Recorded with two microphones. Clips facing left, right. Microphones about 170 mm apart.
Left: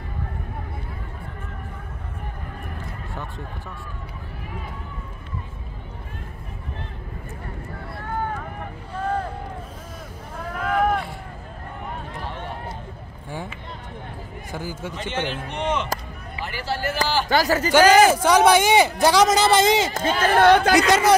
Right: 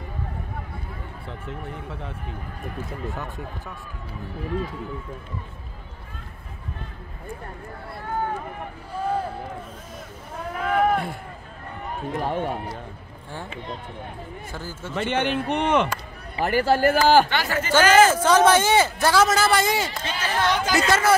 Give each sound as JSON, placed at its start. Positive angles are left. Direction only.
{"t": 3.1, "sound": "speech", "side_deg": 0}
{"t": 8.9, "sound": "vehicle", "side_deg": -10}
{"t": 10.5, "sound": "a sound", "side_deg": -5}
{"t": 12.2, "sound": "speech", "side_deg": -45}
{"t": 14.5, "sound": "a man's voice", "side_deg": 15}
{"t": 15.0, "sound": "speech", "side_deg": -60}
{"t": 17.3, "sound": "speech", "side_deg": 40}
{"t": 17.9, "sound": "a man's voice", "side_deg": 15}
{"t": 19.9, "sound": "speech", "side_deg": 50}
{"t": 20.7, "sound": "a man's voice", "side_deg": 15}